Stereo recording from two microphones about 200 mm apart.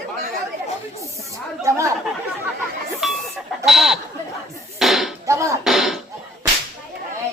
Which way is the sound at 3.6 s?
Centre (ahead or behind).